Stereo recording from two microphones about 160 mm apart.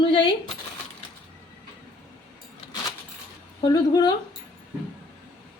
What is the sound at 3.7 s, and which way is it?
Speech, 25° left (ahead or behind).